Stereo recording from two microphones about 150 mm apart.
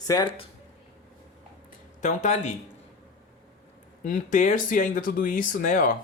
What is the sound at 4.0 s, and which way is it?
Speech, 60° left (ahead or behind).